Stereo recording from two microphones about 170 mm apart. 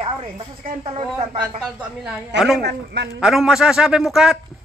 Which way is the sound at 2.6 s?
75° right (ahead or behind).